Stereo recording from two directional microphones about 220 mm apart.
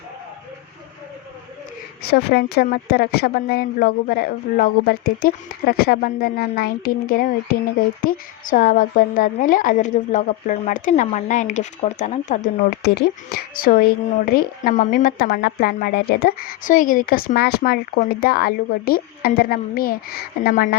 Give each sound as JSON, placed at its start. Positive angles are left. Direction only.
{"t": 2.0, "sound": "a woman's voice", "side_deg": 45}